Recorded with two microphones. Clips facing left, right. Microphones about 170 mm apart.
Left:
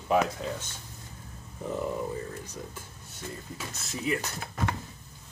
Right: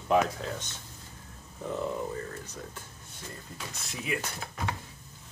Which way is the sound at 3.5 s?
Centre (ahead or behind).